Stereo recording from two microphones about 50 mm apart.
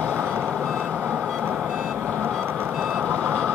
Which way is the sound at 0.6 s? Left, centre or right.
Centre.